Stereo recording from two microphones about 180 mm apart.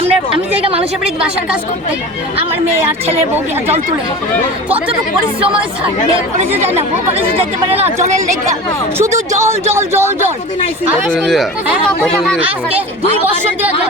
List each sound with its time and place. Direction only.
0.0 s a sound: 30° right (ahead or behind)
6.6 s speech: 35° right (ahead or behind)
9.0 s speech: 15° right (ahead or behind)
11.1 s speech: centre (ahead or behind)